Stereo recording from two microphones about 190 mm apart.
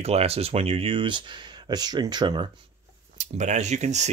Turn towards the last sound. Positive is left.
turn(degrees=-35)  # may be behind; listen again after turning